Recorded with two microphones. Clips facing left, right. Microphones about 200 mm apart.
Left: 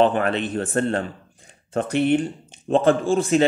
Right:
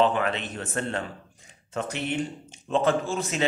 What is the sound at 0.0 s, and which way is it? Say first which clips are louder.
A man's voice: left 5 dB; 50° left (ahead or behind).